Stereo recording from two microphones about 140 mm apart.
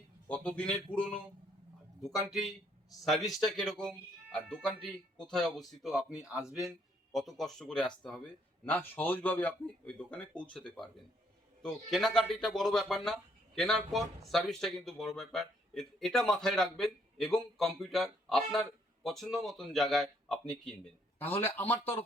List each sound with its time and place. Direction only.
0.3 s a man's voice: 10° left (ahead or behind)
21.2 s a man's voice: 15° left (ahead or behind)